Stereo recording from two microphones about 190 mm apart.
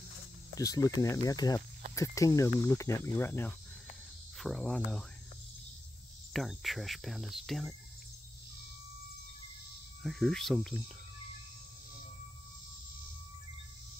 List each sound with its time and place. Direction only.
0.6 s speech: 20° left (ahead or behind)
6.3 s speech: centre (ahead or behind)
10.0 s speech: centre (ahead or behind)